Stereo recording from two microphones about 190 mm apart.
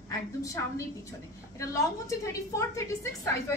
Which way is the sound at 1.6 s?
15° left (ahead or behind).